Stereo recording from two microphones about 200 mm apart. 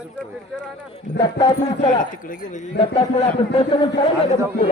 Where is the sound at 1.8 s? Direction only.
40° left (ahead or behind).